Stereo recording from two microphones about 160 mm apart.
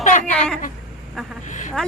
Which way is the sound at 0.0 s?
50° left (ahead or behind).